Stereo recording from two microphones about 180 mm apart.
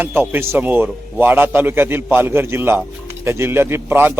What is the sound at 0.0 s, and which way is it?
A man's voice, 10° right (ahead or behind).